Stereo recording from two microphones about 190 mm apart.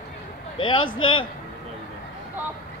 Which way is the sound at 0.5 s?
25° left (ahead or behind).